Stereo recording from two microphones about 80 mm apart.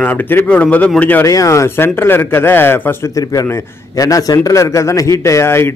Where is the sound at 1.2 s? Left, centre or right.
Left.